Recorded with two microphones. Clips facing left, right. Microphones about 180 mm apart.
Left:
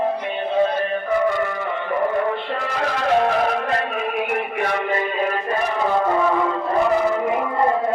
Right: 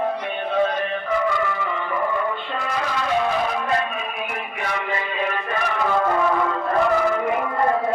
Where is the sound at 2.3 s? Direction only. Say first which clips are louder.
Left 2 dB; 70° left (ahead or behind); by 7.4 s 25° left (ahead or behind).